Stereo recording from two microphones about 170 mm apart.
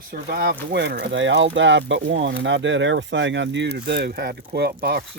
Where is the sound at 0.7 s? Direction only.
85° right; by 5.0 s 60° right (ahead or behind).